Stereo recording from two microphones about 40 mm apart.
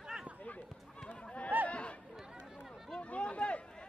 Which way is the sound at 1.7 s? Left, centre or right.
Left.